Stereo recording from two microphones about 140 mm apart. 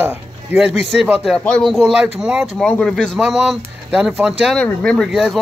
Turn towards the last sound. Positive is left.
turn(degrees=-5)  # may be behind; listen again after turning